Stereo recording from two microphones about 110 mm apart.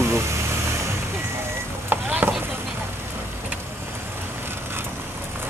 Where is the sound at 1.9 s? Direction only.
20° right (ahead or behind).